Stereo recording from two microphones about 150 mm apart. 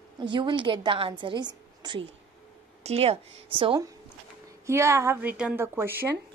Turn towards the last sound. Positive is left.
turn(degrees=-15)  # may be behind; listen again after turning